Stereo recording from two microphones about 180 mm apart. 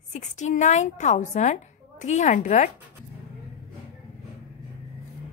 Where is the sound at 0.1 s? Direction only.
40° left (ahead or behind).